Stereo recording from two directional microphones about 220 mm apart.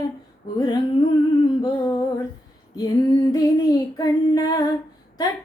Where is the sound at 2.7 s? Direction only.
15° left (ahead or behind).